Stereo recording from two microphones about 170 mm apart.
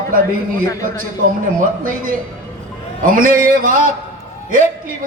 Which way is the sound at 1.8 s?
55° right (ahead or behind).